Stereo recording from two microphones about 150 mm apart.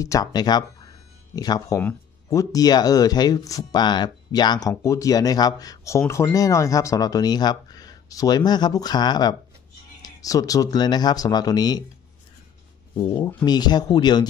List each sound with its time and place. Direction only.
0.0 s speech: 25° left (ahead or behind)
13.0 s speech: 30° left (ahead or behind)